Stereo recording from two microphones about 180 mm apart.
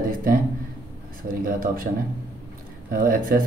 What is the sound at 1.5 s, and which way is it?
Speech, 50° right (ahead or behind).